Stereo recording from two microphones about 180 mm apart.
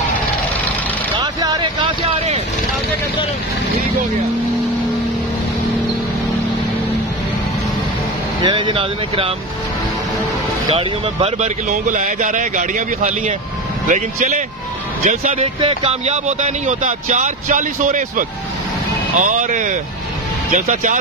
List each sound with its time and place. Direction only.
1.1 s vehicle: 25° right (ahead or behind)
8.4 s speech: 25° right (ahead or behind)
10.7 s speech: 30° right (ahead or behind)